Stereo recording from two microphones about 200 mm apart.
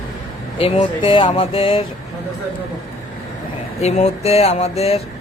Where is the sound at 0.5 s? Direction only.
25° left (ahead or behind).